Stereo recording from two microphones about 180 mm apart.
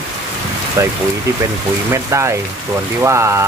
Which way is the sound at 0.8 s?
15° right (ahead or behind).